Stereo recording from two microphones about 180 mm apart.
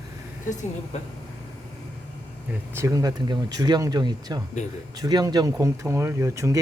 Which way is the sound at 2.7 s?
20° right (ahead or behind).